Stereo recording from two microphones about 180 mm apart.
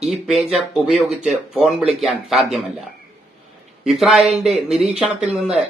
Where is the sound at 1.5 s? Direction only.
5° right (ahead or behind).